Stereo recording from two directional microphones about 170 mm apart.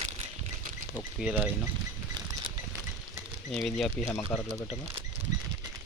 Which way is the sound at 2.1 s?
20° right (ahead or behind).